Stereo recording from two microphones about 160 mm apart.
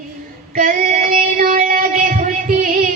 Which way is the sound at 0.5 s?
55° right (ahead or behind).